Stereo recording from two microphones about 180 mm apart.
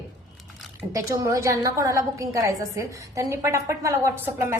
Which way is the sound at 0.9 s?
15° right (ahead or behind).